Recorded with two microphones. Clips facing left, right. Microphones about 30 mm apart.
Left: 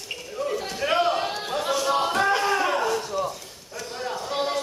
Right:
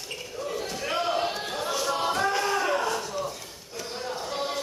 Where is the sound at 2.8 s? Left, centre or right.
Centre.